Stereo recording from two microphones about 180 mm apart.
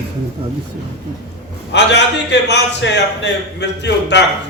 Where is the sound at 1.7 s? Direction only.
75° left (ahead or behind).